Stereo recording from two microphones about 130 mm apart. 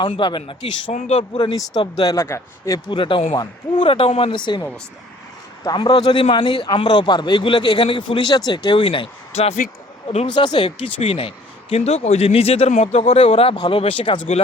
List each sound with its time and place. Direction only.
0.2 s a man's voice: 35° left (ahead or behind)
0.9 s speech: 65° left (ahead or behind)
1.1 s speech: 45° left (ahead or behind)
1.7 s speech: 30° left (ahead or behind)
2.9 s a man's voice: 40° left (ahead or behind)
5.7 s a man's voice: 35° left (ahead or behind); by 9.6 s 50° left (ahead or behind)
10.3 s speech: 35° left (ahead or behind)